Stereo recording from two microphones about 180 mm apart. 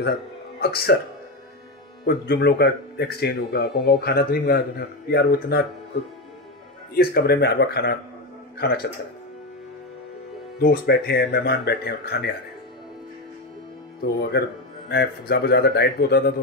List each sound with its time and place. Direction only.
0.6 s a man's voice: 65° left (ahead or behind)
2.0 s a man's voice: 65° left (ahead or behind)
6.9 s a man's voice: 60° left (ahead or behind)
10.6 s a man's voice: 60° left (ahead or behind)
14.0 s a man's voice: 55° left (ahead or behind)